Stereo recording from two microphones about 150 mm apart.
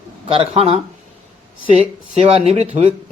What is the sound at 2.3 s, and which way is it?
Speech, 40° right (ahead or behind).